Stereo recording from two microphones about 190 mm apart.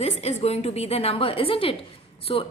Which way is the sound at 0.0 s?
35° left (ahead or behind).